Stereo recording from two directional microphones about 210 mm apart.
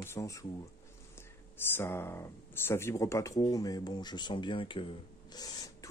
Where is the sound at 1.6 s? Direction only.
10° left (ahead or behind).